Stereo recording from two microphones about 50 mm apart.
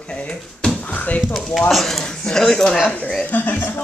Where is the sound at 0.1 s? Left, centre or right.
Left.